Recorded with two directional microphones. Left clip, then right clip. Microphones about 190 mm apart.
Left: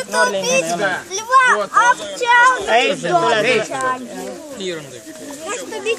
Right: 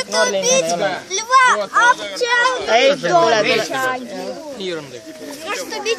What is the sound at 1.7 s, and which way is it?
Speech, 20° right (ahead or behind).